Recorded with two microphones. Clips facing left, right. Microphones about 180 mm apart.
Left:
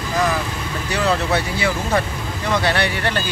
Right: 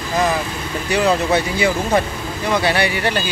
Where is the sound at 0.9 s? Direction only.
15° right (ahead or behind).